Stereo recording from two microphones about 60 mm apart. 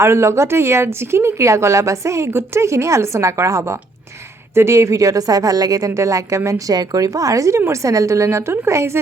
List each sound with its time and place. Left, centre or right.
0.0 s speech: right